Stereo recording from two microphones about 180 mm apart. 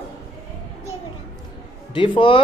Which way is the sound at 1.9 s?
30° left (ahead or behind).